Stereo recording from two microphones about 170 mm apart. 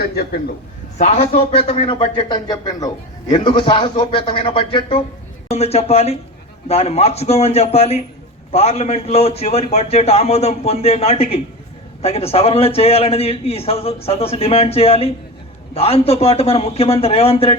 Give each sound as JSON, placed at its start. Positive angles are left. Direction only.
{"t": 0.0, "sound": "a man's voice", "side_deg": 65}
{"t": 0.9, "sound": "a man's voice", "side_deg": 40}